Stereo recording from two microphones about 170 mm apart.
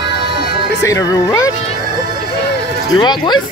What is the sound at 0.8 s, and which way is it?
Speech, 20° left (ahead or behind).